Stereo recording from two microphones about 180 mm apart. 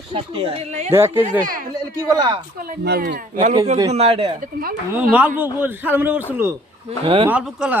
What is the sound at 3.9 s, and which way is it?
Speech, 35° right (ahead or behind).